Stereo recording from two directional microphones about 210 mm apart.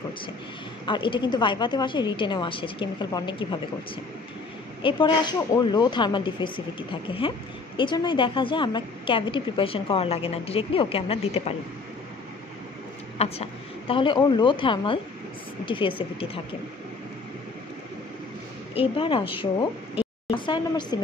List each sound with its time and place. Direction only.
0.8 s a woman's voice: 25° left (ahead or behind)
4.8 s a woman's voice: 25° left (ahead or behind)
13.2 s a woman's voice: 30° left (ahead or behind)
18.8 s a woman's voice: 25° left (ahead or behind)